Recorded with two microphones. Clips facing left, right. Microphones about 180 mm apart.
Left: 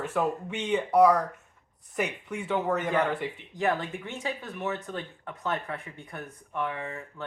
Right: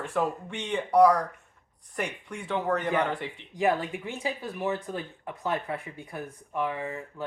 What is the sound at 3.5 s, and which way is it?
Speech, 10° right (ahead or behind).